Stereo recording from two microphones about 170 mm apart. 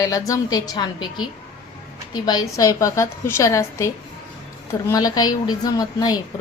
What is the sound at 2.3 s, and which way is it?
A woman's voice, 20° left (ahead or behind).